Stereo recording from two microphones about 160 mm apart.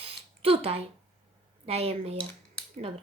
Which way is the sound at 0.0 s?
35° right (ahead or behind).